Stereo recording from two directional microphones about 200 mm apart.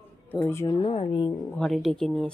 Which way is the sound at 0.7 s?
25° left (ahead or behind).